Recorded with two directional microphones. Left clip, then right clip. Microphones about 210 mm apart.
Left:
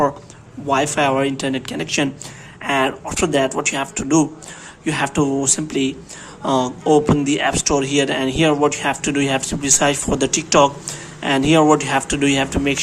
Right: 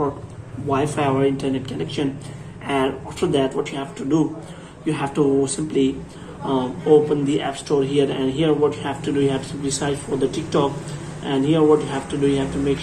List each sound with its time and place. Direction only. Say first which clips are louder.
0.7 s a man's voice: left 4 dB; 25° left (ahead or behind)